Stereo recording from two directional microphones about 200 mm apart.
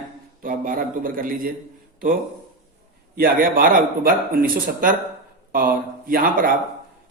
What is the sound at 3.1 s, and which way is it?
A man's voice, 45° right (ahead or behind).